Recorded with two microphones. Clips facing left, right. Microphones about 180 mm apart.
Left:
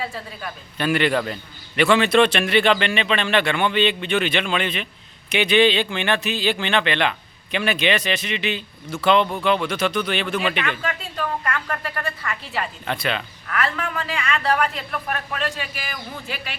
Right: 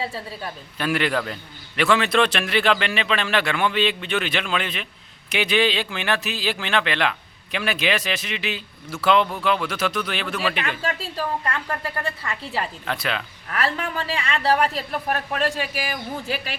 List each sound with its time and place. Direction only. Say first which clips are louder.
0.0 s a woman's voice: right 1 dB; 30° right (ahead or behind)
0.8 s a man's voice: left 3 dB; centre (ahead or behind)
11.2 s a woman's voice: left 1 dB; 30° right (ahead or behind)
12.8 s a man's voice: left 2 dB; centre (ahead or behind)
13.5 s a woman's voice: even; 30° right (ahead or behind)